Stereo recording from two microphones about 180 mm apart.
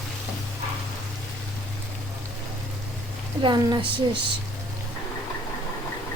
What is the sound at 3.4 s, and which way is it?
Speech, 25° right (ahead or behind).